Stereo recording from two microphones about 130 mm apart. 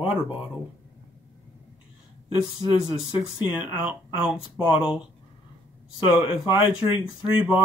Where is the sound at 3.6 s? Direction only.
5° right (ahead or behind).